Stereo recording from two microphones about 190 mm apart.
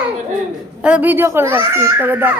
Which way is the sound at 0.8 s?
10° right (ahead or behind).